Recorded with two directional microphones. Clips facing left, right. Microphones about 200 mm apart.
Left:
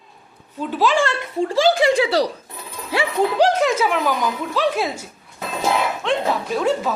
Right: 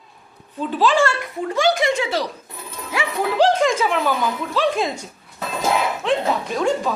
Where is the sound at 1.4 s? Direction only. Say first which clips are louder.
Left 3 dB; 30° left (ahead or behind).